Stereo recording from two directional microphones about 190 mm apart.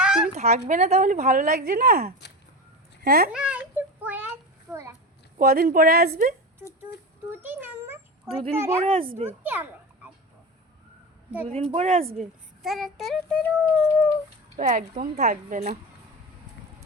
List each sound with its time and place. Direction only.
0.0 s a sound: 5° right (ahead or behind)
0.3 s a woman's voice: 35° right (ahead or behind); by 3.2 s 55° right (ahead or behind)
3.2 s a sound: 5° right (ahead or behind)
5.4 s a woman's voice: 50° right (ahead or behind)
7.4 s a sound: 10° right (ahead or behind)
8.3 s speech: 30° right (ahead or behind)
8.5 s a woman's voice: 15° right (ahead or behind)
8.8 s speech: 30° right (ahead or behind)
9.4 s children playing: 10° right (ahead or behind)
11.4 s speech: 30° right (ahead or behind)
12.6 s a child's voice: centre (ahead or behind)
14.6 s a woman's voice: 45° right (ahead or behind)